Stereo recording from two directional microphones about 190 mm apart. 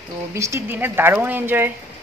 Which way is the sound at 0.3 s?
15° right (ahead or behind).